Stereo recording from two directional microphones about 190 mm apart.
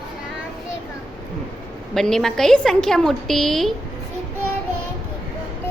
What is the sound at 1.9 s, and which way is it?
A woman's voice, centre (ahead or behind).